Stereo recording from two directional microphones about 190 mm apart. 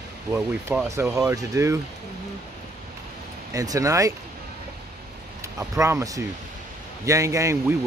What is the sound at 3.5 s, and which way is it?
Speech, 20° right (ahead or behind).